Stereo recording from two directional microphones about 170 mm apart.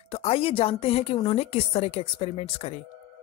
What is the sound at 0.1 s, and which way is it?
Speech, 35° left (ahead or behind).